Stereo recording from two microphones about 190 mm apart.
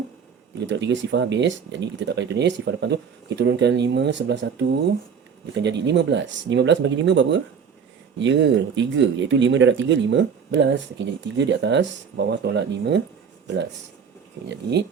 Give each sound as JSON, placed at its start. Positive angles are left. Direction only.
{"t": 0.7, "sound": "speech", "side_deg": -70}
{"t": 5.6, "sound": "speech", "side_deg": -65}
{"t": 14.4, "sound": "speech", "side_deg": -65}